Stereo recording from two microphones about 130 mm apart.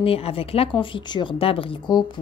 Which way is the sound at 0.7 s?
35° left (ahead or behind).